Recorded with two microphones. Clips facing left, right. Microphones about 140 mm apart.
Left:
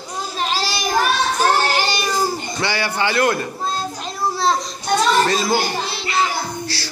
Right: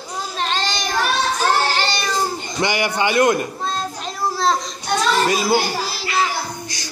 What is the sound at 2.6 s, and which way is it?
Speech, 20° right (ahead or behind).